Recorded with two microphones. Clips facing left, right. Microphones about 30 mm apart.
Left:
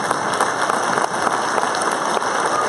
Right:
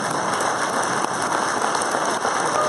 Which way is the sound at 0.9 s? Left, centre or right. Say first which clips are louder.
Left 3 dB; left.